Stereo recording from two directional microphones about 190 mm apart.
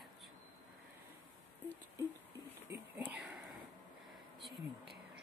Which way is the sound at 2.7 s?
10° right (ahead or behind).